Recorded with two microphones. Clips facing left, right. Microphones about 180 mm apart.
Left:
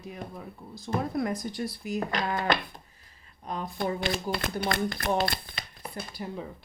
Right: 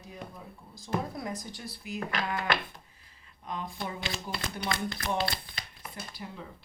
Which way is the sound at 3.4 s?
45° left (ahead or behind).